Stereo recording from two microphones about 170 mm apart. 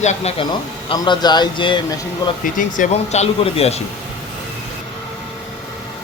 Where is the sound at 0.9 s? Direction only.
30° left (ahead or behind).